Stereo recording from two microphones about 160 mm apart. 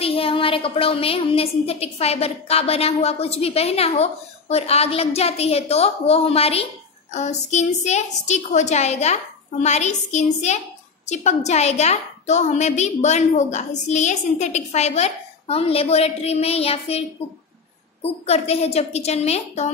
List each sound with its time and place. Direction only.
0.0 s a woman's voice: 35° left (ahead or behind)
18.0 s a woman's voice: 40° left (ahead or behind)